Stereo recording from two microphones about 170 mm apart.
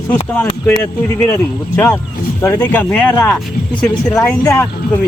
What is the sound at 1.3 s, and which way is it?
A man's voice, 10° left (ahead or behind).